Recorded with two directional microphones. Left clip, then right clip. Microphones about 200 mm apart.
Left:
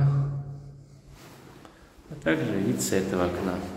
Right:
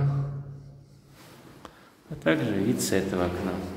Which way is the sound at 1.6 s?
35° right (ahead or behind).